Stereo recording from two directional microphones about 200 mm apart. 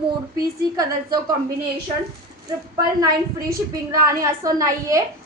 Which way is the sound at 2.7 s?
20° right (ahead or behind).